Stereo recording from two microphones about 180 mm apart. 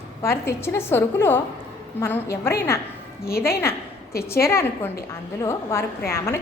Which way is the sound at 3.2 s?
60° left (ahead or behind).